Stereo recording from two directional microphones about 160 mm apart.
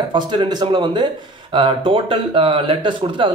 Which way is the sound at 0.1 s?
25° right (ahead or behind).